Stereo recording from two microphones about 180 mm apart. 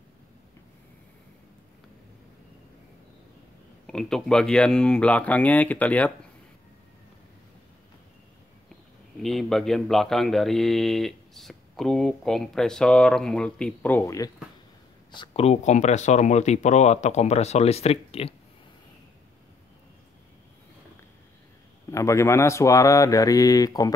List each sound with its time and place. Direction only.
3.8 s speech: 5° left (ahead or behind)
9.2 s speech: centre (ahead or behind); by 14.3 s 15° left (ahead or behind)
15.0 s speech: 30° left (ahead or behind)
21.9 s speech: 15° left (ahead or behind)